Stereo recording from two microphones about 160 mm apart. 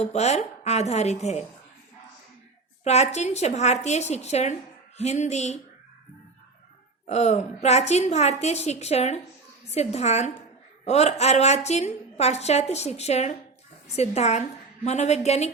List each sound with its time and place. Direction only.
0.0 s a woman's voice: 45° left (ahead or behind)
2.8 s a woman's voice: 45° left (ahead or behind)
7.1 s a woman's voice: 45° left (ahead or behind)